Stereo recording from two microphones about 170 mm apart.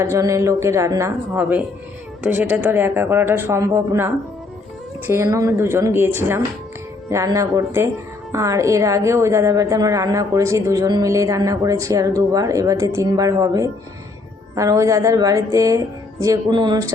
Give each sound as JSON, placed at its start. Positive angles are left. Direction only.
{"t": 0.0, "sound": "a woman's voice", "side_deg": -20}